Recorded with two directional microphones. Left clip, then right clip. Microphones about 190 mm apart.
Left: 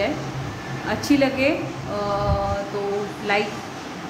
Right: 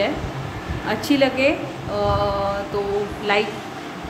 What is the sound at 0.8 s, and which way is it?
Speech, 10° right (ahead or behind).